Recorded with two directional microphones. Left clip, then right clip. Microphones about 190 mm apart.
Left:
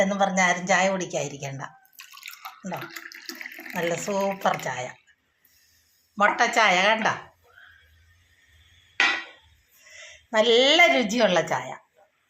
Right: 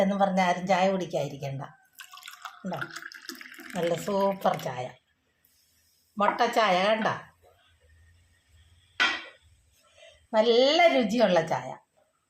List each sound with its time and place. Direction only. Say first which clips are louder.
0.0 s speech: left 3 dB; 5° left (ahead or behind)
2.0 s drip: left 1 dB; 10° right (ahead or behind)
2.7 s speech: left 1 dB; 10° right (ahead or behind)
6.1 s speech: left 4 dB; centre (ahead or behind)
10.3 s a woman's voice: left 3 dB; 10° left (ahead or behind)